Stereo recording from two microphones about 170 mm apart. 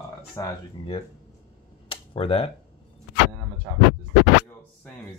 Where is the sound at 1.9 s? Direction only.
30° left (ahead or behind).